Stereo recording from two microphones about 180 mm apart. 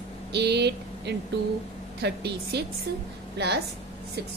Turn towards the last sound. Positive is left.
turn(degrees=-70)  # may be behind; listen again after turning